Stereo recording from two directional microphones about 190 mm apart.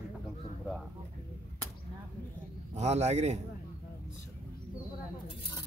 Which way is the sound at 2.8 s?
35° right (ahead or behind).